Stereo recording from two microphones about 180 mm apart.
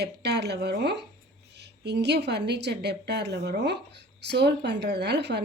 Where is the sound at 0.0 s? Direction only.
65° right (ahead or behind).